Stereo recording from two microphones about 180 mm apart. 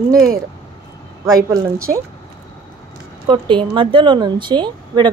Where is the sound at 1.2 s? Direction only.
15° right (ahead or behind).